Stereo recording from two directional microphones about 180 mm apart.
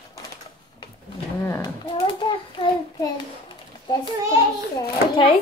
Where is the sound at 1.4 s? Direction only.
15° left (ahead or behind).